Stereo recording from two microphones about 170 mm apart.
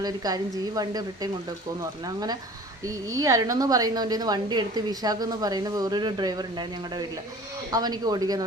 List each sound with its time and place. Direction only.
0.0 s a woman's voice: 20° right (ahead or behind)